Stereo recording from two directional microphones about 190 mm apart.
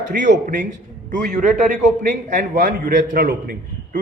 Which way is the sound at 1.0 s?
40° right (ahead or behind).